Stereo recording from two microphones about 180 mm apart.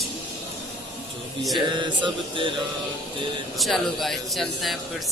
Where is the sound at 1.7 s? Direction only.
25° right (ahead or behind).